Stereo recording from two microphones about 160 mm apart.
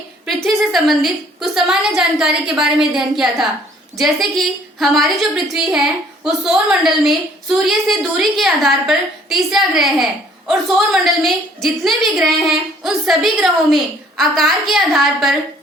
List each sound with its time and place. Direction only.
0.4 s a woman's voice: centre (ahead or behind)